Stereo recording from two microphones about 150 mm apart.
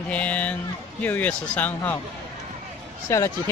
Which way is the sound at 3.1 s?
20° left (ahead or behind).